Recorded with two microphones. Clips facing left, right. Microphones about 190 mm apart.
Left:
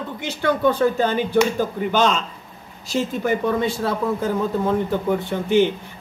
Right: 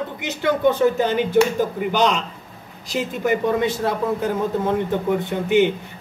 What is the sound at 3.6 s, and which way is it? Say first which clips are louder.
Speech: right 1 dB; 20° right (ahead or behind).